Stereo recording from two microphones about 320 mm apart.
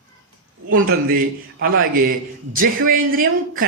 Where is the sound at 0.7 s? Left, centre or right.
Right.